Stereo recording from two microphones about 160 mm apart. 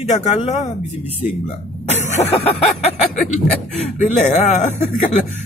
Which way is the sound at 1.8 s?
45° left (ahead or behind).